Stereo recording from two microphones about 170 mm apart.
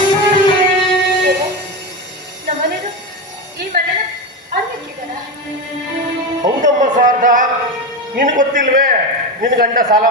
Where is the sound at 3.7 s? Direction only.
60° right (ahead or behind).